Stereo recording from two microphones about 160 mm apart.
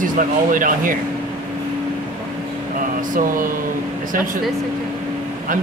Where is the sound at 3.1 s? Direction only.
60° right (ahead or behind).